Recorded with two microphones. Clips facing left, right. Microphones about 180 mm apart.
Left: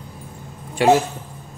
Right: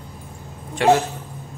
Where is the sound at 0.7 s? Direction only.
10° left (ahead or behind).